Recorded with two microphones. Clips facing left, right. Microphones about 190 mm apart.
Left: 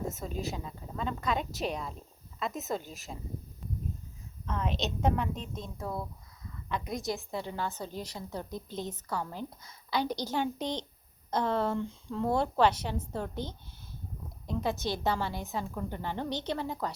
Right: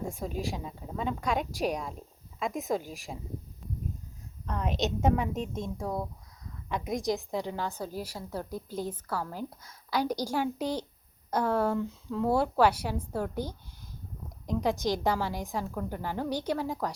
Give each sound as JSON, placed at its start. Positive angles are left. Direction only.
{"t": 0.1, "sound": "a woman's voice", "side_deg": -10}
{"t": 4.4, "sound": "a woman's voice", "side_deg": 0}